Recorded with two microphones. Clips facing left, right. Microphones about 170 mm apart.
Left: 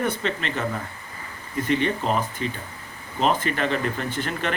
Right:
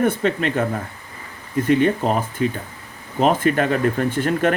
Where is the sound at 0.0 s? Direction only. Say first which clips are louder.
Right 7 dB; 50° right (ahead or behind).